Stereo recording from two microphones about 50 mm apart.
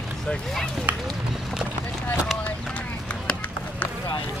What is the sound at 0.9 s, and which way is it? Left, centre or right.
Run, right.